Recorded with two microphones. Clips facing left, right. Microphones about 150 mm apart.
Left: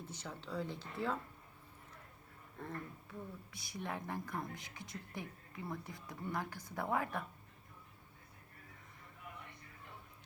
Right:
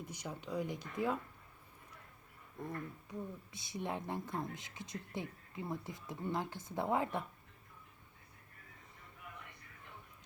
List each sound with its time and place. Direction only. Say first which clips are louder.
0.0 s speech: right 3 dB; 15° right (ahead or behind)
2.6 s speech: right 3 dB; 15° right (ahead or behind)